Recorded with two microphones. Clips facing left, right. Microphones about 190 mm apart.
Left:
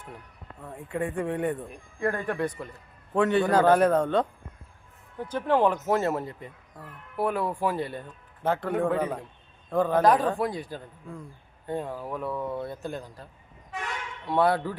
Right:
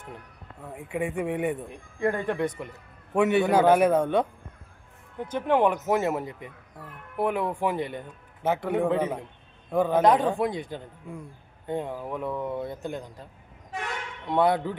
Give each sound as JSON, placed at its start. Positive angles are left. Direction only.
{"t": 0.6, "sound": "a man's voice", "side_deg": -10}
{"t": 1.6, "sound": "speech", "side_deg": -20}
{"t": 2.7, "sound": "a man's voice", "side_deg": -10}
{"t": 8.9, "sound": "speech", "side_deg": -20}
{"t": 9.6, "sound": "a man's voice", "side_deg": -10}
{"t": 10.0, "sound": "speech", "side_deg": -20}
{"t": 14.3, "sound": "speech", "side_deg": -20}